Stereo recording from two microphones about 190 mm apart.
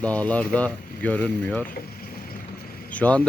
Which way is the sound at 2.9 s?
5° left (ahead or behind).